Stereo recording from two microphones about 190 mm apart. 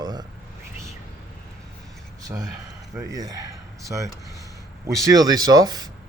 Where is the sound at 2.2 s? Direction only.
20° right (ahead or behind).